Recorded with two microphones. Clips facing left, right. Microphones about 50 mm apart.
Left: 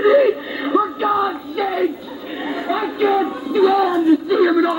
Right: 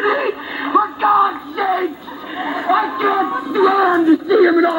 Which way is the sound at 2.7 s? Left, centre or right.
Right.